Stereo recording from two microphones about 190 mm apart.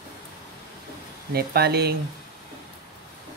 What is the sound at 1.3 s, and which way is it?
Speech, 55° right (ahead or behind).